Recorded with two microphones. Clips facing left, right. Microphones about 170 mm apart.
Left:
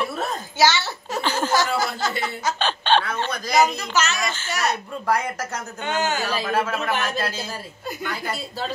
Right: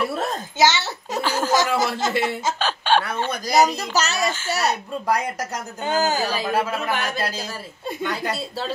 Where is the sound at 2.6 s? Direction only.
5° right (ahead or behind).